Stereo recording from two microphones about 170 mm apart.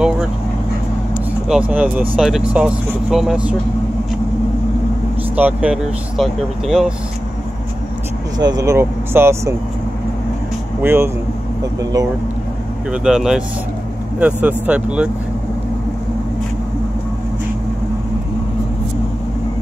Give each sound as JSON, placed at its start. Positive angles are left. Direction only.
{"t": 1.5, "sound": "speech", "side_deg": -10}
{"t": 5.3, "sound": "speech", "side_deg": -5}
{"t": 8.4, "sound": "speech", "side_deg": -20}
{"t": 10.8, "sound": "speech", "side_deg": -15}
{"t": 12.9, "sound": "speech", "side_deg": -5}